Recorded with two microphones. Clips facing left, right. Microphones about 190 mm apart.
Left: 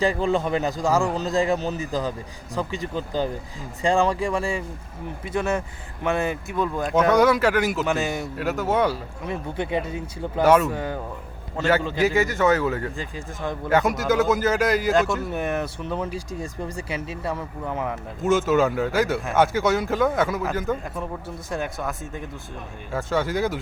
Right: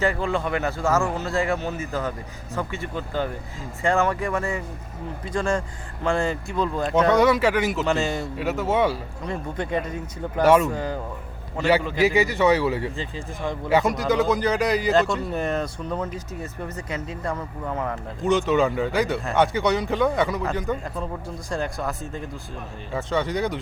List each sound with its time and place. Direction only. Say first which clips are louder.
0.0 s a man's voice: left 2 dB; 20° left (ahead or behind)
3.8 s a man's voice: left 1 dB; 15° left (ahead or behind)
11.5 s a man's voice: right 1 dB; 10° right (ahead or behind)